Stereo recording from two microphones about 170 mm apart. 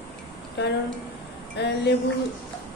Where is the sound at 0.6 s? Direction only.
90° left.